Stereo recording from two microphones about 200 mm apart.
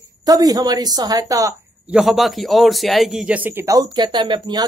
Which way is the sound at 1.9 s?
Centre (ahead or behind).